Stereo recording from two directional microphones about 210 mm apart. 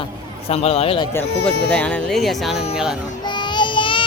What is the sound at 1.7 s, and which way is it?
Speech, 5° left (ahead or behind).